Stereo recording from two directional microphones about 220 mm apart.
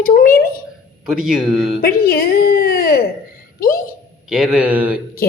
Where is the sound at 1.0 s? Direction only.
5° right (ahead or behind).